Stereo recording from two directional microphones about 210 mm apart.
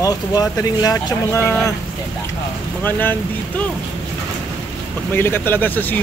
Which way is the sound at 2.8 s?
10° left (ahead or behind).